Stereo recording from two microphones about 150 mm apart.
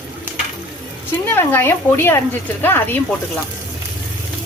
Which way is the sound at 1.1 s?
15° left (ahead or behind).